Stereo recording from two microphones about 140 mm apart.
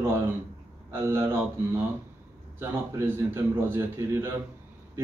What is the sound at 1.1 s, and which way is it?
Speech, 20° right (ahead or behind).